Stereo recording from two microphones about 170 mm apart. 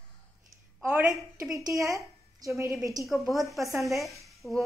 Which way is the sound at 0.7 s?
5° right (ahead or behind).